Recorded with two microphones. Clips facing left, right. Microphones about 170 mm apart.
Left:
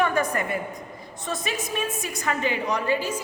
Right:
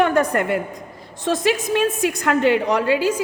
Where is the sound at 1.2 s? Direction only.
90° right.